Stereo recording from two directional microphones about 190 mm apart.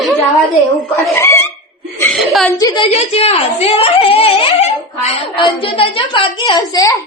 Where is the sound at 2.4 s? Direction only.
20° left (ahead or behind).